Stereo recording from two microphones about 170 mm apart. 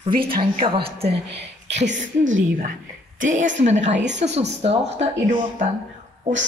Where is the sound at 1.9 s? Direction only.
90° right.